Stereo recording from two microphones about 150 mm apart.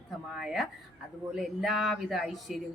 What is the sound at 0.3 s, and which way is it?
Speech, centre (ahead or behind).